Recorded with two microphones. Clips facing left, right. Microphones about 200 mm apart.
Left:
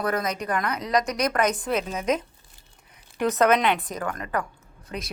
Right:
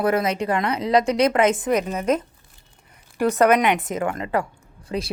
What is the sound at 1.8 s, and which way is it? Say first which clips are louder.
Speech: right 4 dB; 5° right (ahead or behind).